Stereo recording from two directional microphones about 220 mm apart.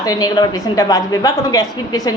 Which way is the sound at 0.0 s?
15° left (ahead or behind).